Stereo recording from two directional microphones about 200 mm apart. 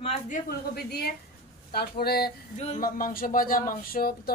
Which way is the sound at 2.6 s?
40° left (ahead or behind).